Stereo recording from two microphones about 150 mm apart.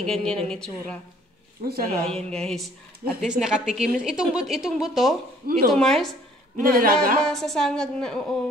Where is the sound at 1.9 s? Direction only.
45° right (ahead or behind).